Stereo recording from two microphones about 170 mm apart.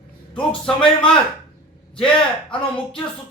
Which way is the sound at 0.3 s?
5° left (ahead or behind).